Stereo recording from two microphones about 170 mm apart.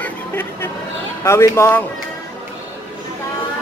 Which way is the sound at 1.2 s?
15° left (ahead or behind).